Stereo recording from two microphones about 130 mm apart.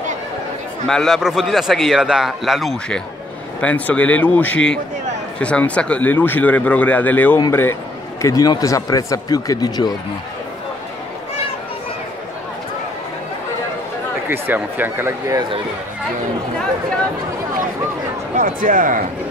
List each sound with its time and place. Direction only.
0.8 s a man's voice: centre (ahead or behind)
8.2 s speech: 25° left (ahead or behind)
14.3 s speech: 15° right (ahead or behind)
18.3 s speech: 90° right